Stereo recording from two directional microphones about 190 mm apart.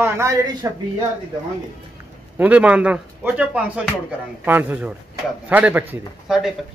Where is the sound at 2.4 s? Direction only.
5° right (ahead or behind).